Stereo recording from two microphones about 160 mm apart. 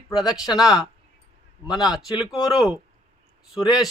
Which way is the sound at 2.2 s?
25° left (ahead or behind).